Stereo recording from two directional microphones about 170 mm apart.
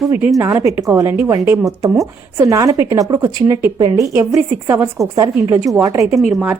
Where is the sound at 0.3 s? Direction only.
20° right (ahead or behind).